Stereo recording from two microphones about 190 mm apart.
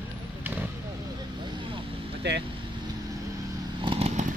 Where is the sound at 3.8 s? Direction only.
30° right (ahead or behind).